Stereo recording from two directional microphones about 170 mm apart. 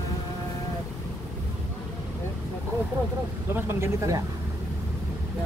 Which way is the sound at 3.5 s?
15° right (ahead or behind).